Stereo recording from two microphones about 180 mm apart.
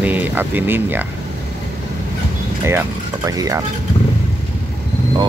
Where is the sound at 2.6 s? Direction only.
15° right (ahead or behind).